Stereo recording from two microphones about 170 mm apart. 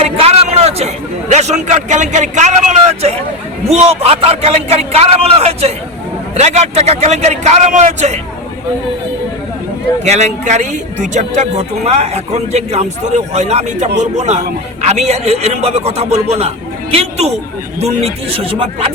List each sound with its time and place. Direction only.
0.0 s a sound: 35° right (ahead or behind)
1.3 s a man's voice: 40° right (ahead or behind)
3.7 s a man's voice: 40° right (ahead or behind)
10.0 s a man's voice: 40° right (ahead or behind)